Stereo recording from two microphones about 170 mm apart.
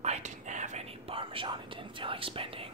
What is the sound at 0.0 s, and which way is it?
Whispering, 40° right (ahead or behind).